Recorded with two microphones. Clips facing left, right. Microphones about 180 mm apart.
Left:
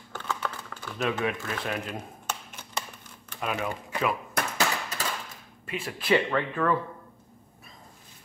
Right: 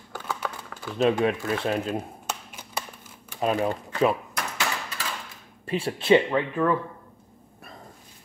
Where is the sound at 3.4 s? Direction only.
35° right (ahead or behind).